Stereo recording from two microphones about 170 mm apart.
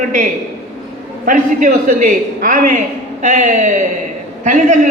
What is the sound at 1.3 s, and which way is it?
A man's voice, 50° right (ahead or behind).